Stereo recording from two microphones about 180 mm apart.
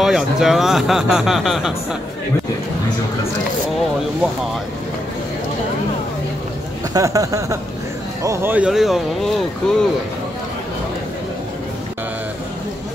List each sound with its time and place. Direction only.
0.0 s speech: centre (ahead or behind)
6.9 s speech: 20° right (ahead or behind); by 9.8 s centre (ahead or behind)